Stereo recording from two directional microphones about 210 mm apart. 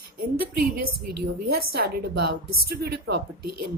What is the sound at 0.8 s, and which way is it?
A woman's voice, 50° right (ahead or behind).